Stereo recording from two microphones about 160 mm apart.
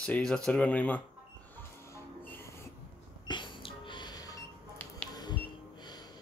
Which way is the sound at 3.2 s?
30° left (ahead or behind).